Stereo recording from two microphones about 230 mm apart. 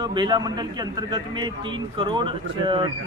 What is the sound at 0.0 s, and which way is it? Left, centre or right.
A man's voice, centre.